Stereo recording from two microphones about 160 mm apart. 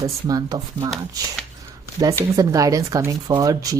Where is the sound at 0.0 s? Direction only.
25° right (ahead or behind).